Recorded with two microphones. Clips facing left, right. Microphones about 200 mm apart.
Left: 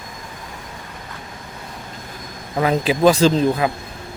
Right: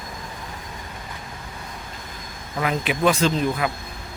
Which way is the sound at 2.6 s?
30° left (ahead or behind).